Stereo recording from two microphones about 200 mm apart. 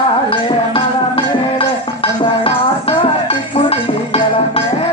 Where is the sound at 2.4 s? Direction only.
25° left (ahead or behind).